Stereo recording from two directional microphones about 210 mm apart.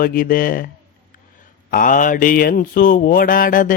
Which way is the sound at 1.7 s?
40° left (ahead or behind).